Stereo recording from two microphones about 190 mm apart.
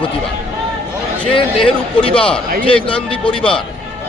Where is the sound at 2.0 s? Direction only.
5° left (ahead or behind).